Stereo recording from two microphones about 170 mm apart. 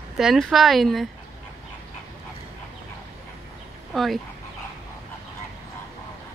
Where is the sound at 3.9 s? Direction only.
Centre (ahead or behind).